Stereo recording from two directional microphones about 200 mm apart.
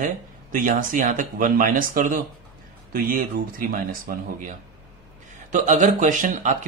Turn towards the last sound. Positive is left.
turn(degrees=-40)  # may be behind; listen again after turning